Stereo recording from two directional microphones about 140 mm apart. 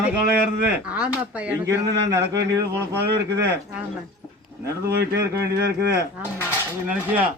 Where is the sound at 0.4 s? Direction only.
10° right (ahead or behind).